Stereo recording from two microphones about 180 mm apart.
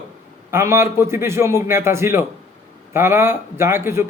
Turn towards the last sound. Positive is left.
turn(degrees=-15)  # may be behind; listen again after turning